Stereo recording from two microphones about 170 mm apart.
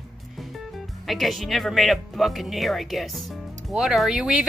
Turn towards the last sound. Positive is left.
turn(degrees=-5)  # may be behind; listen again after turning